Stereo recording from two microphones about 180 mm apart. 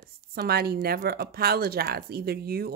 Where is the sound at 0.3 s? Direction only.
60° right (ahead or behind).